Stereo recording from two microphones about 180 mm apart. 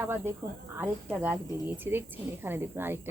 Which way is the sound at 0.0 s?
15° right (ahead or behind).